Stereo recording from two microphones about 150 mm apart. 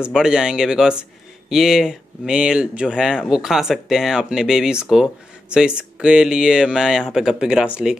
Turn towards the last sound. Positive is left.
turn(degrees=-5)  # may be behind; listen again after turning